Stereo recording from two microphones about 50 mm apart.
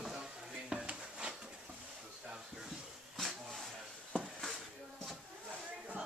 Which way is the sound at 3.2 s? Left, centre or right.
Centre.